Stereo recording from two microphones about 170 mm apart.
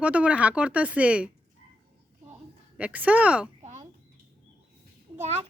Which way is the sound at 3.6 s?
45° right (ahead or behind).